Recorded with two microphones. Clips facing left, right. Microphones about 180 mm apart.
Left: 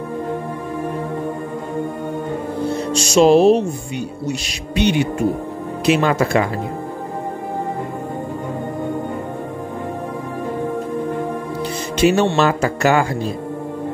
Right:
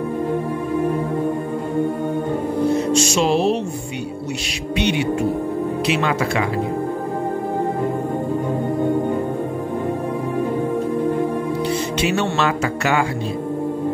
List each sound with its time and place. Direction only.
2.9 s music: 35° left (ahead or behind)
4.7 s speech: 40° left (ahead or behind)
12.0 s speech: 40° left (ahead or behind)